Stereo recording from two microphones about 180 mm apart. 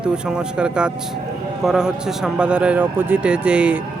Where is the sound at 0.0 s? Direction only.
5° right (ahead or behind).